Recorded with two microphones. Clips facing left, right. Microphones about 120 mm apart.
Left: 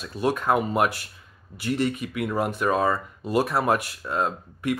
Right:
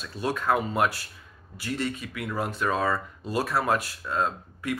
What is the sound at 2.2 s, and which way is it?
Speech, 15° left (ahead or behind).